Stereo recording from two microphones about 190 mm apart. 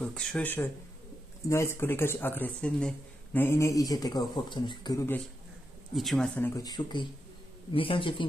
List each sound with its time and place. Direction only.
0.0 s a man's voice: 5° left (ahead or behind)
5.9 s a man's voice: centre (ahead or behind); by 8.3 s 25° left (ahead or behind)